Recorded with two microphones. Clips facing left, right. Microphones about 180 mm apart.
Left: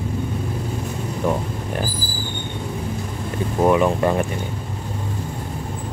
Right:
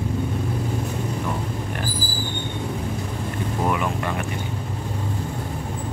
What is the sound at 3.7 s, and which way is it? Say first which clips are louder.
Speech: left 10 dB; 30° left (ahead or behind).